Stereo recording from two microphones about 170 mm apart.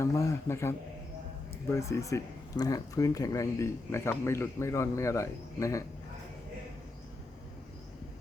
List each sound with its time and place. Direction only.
0.0 s speech: 15° left (ahead or behind)